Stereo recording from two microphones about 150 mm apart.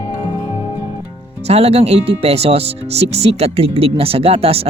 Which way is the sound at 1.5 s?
45° right (ahead or behind).